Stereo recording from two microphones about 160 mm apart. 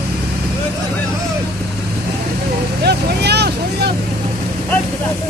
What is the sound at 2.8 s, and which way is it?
Speech, 90° right.